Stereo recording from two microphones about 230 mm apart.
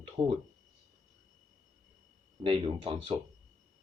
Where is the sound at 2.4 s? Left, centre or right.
Right.